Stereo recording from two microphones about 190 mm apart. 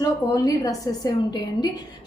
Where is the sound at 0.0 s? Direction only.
20° left (ahead or behind).